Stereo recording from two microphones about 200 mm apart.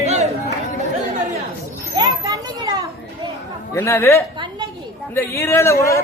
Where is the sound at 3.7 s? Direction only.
10° left (ahead or behind).